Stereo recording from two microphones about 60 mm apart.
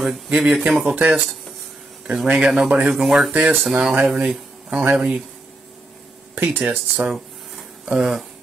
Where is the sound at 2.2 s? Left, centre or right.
Right; by 3.3 s centre.